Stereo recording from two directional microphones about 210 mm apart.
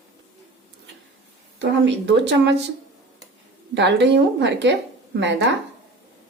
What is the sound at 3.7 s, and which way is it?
A woman's voice, 55° right (ahead or behind).